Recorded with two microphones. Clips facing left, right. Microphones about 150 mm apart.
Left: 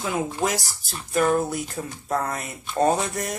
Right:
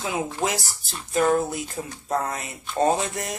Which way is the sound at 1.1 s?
25° right (ahead or behind).